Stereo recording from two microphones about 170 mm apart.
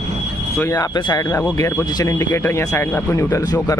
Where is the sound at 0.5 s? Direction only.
20° left (ahead or behind).